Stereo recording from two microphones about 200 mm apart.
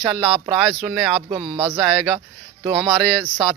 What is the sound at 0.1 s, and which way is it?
Speech, centre (ahead or behind).